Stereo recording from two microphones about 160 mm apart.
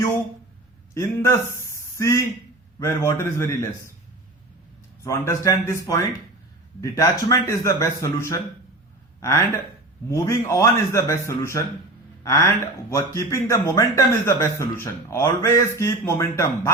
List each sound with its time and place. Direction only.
0.9 s speech: 15° left (ahead or behind)
5.0 s a man's voice: 20° left (ahead or behind)
10.1 s speech: 20° left (ahead or behind)